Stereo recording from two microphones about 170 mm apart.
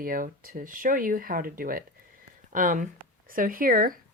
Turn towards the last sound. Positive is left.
turn(degrees=-60)  # may be behind; listen again after turning